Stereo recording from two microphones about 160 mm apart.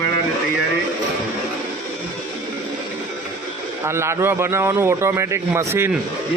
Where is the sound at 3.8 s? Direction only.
15° right (ahead or behind).